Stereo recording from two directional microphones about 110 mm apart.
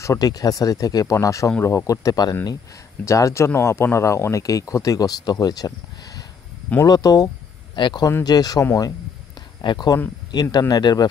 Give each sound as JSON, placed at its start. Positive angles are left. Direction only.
{"t": 0.0, "sound": "speech", "side_deg": 30}
{"t": 6.8, "sound": "speech", "side_deg": 35}